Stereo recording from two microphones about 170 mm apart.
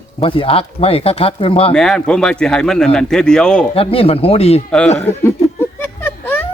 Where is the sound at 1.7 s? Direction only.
Centre (ahead or behind).